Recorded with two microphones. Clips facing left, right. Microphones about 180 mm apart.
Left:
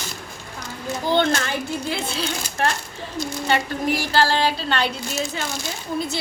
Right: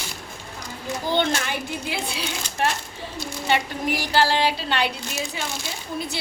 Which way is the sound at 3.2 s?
10° right (ahead or behind).